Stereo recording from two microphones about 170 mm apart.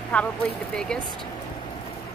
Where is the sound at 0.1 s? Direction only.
5° left (ahead or behind).